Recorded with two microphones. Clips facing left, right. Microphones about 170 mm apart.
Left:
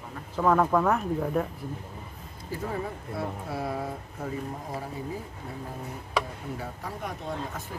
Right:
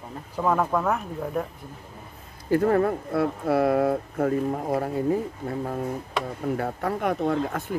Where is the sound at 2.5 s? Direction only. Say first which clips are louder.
Right 12 dB; 65° right (ahead or behind).